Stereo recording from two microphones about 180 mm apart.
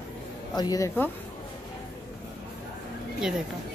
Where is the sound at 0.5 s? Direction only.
20° left (ahead or behind).